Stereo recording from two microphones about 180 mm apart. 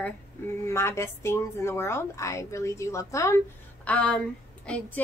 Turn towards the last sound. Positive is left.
turn(degrees=10)  # may be behind; listen again after turning